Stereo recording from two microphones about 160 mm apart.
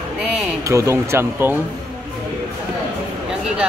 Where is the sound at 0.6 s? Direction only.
20° right (ahead or behind).